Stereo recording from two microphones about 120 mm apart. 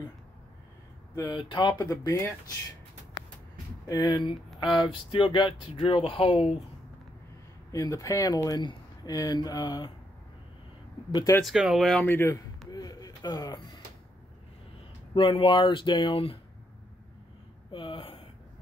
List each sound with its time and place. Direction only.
1.1 s speech: 30° left (ahead or behind)
1.4 s speech: 40° left (ahead or behind); by 2.3 s 25° left (ahead or behind)
3.8 s speech: 30° left (ahead or behind); by 6.5 s 50° left (ahead or behind)
7.7 s speech: 25° left (ahead or behind)
11.4 s speech: 5° right (ahead or behind)
12.1 s speech: 20° left (ahead or behind)
12.6 s a sound: 30° left (ahead or behind)
15.1 s speech: 45° left (ahead or behind)
17.6 s a sound: 45° left (ahead or behind)